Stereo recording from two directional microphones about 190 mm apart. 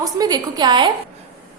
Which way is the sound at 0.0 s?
20° right (ahead or behind).